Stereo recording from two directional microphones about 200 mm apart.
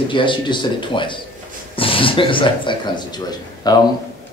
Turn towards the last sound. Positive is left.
turn(degrees=20)  # may be behind; listen again after turning